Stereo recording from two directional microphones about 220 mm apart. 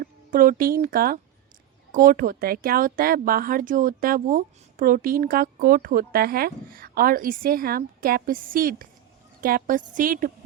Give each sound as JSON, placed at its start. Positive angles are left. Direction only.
{"t": 0.0, "sound": "speech", "side_deg": -40}